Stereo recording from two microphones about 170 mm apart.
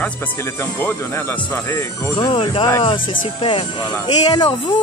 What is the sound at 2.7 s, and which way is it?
Speech, 20° left (ahead or behind).